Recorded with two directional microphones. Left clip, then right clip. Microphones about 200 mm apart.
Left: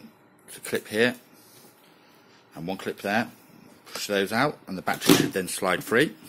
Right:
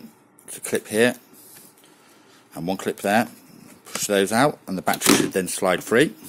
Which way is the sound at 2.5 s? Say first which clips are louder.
Right 6 dB; 35° right (ahead or behind).